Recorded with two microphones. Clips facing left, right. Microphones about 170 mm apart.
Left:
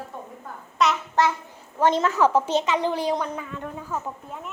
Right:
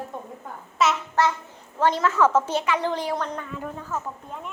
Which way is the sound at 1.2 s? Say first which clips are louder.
Left 1 dB; 15° left (ahead or behind).